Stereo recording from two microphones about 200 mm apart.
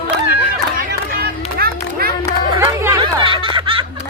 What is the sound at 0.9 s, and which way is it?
Run, 50° right (ahead or behind).